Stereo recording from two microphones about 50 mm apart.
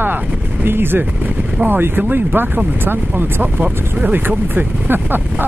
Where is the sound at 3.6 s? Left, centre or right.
Right.